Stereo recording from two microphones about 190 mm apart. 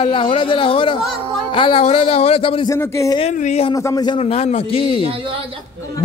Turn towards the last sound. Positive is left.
turn(degrees=-30)  # may be behind; listen again after turning